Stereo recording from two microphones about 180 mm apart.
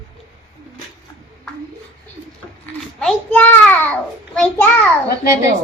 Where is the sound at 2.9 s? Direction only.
5° left (ahead or behind).